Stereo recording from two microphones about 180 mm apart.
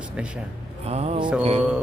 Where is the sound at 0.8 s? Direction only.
35° right (ahead or behind).